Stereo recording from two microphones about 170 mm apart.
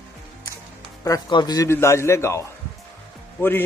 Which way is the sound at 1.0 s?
20° left (ahead or behind).